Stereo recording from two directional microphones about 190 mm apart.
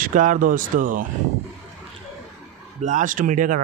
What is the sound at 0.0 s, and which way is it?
Speech, 45° right (ahead or behind).